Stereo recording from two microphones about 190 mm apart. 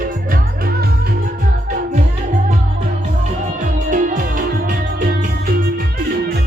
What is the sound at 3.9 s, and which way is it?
Music, 45° right (ahead or behind).